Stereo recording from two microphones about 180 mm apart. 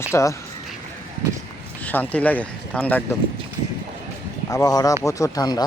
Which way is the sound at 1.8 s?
10° left (ahead or behind).